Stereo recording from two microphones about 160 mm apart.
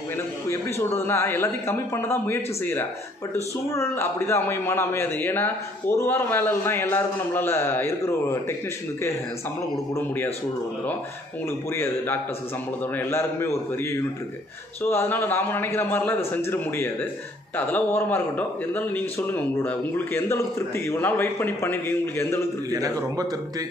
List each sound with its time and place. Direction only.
0.5 s a man's voice: 15° left (ahead or behind)
9.9 s a man's voice: 15° left (ahead or behind)
11.7 s a man's voice: 15° left (ahead or behind)
22.7 s a man's voice: 20° right (ahead or behind)